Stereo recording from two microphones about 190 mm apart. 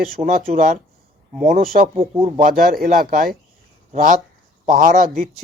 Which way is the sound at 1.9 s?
30° right (ahead or behind).